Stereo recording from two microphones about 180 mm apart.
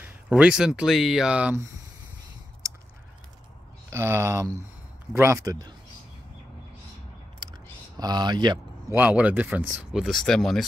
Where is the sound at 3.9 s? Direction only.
15° right (ahead or behind).